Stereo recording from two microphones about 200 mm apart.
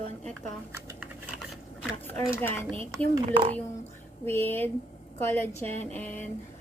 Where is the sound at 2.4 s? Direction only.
10° left (ahead or behind).